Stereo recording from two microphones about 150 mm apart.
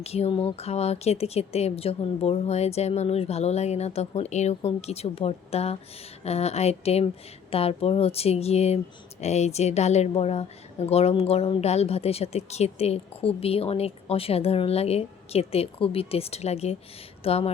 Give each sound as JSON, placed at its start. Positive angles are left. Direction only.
{"t": 0.0, "sound": "a woman's voice", "side_deg": 45}